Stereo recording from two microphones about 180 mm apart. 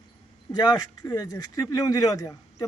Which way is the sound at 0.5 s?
20° left (ahead or behind).